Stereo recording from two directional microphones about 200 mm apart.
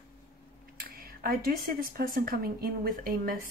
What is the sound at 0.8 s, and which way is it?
Speech, 50° right (ahead or behind).